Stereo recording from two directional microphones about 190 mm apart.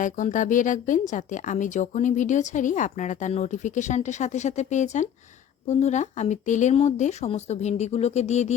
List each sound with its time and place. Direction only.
0.0 s speech: 40° left (ahead or behind)